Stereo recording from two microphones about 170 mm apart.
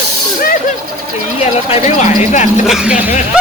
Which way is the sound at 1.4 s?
40° left (ahead or behind).